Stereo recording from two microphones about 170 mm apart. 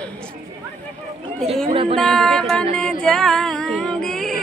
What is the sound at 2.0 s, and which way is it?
Music, 5° left (ahead or behind).